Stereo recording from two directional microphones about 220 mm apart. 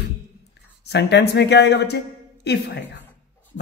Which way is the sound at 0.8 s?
50° left (ahead or behind).